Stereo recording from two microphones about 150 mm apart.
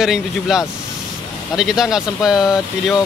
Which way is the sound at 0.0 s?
5° right (ahead or behind).